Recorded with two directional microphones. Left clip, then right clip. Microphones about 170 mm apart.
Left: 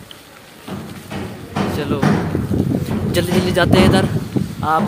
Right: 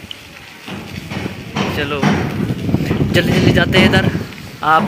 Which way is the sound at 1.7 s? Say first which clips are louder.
Right 3 dB; 15° left (ahead or behind).